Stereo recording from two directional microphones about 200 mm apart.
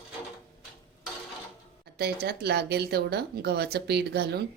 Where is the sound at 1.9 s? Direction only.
50° right (ahead or behind).